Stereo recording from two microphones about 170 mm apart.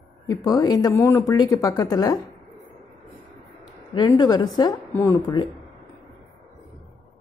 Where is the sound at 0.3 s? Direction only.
20° left (ahead or behind).